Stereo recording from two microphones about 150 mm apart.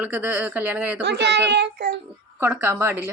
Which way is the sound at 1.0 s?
90° right.